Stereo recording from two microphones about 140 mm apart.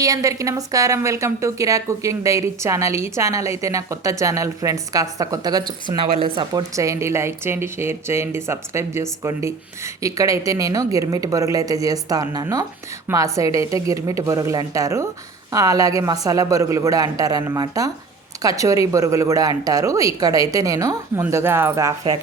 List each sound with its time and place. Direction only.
0.0 s speech: 25° right (ahead or behind)